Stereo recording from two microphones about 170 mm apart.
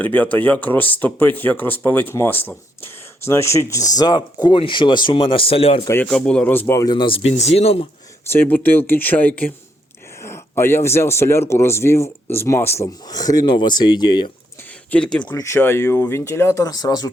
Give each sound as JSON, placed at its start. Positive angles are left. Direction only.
{"t": 0.0, "sound": "speech", "side_deg": 10}
{"t": 5.8, "sound": "speech", "side_deg": 15}
{"t": 6.1, "sound": "speech", "side_deg": 5}
{"t": 7.3, "sound": "speech", "side_deg": 40}
{"t": 8.3, "sound": "speech", "side_deg": 10}
{"t": 14.8, "sound": "speech", "side_deg": 5}